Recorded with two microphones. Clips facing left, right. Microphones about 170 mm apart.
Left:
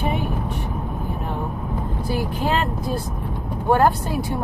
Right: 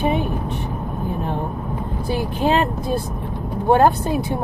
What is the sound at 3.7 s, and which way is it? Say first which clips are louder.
Speech: right 3 dB; 20° right (ahead or behind).